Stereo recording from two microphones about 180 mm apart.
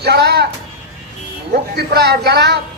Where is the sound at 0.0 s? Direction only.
65° right (ahead or behind).